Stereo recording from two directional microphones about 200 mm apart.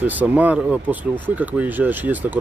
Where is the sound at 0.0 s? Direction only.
10° right (ahead or behind).